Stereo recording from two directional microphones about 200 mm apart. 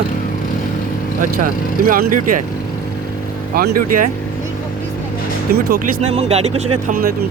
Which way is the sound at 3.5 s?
50° right (ahead or behind).